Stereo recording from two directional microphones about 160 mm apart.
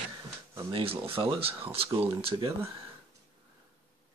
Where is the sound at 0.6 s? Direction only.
35° right (ahead or behind).